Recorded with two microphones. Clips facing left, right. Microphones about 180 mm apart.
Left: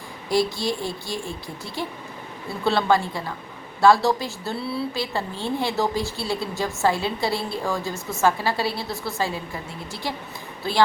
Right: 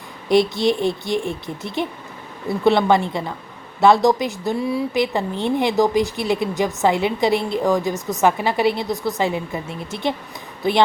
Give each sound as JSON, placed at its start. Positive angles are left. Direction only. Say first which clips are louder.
{"t": 0.3, "sound": "a woman's voice", "louder": "right 6 dB", "side_deg": -20}